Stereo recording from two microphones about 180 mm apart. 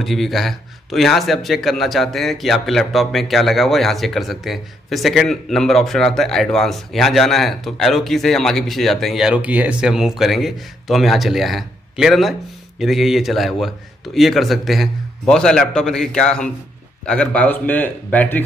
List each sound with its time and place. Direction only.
0.0 s speech: centre (ahead or behind)